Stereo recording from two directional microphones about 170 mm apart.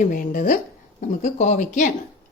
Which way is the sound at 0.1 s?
50° left (ahead or behind).